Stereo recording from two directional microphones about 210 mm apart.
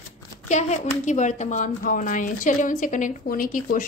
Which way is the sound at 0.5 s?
35° left (ahead or behind).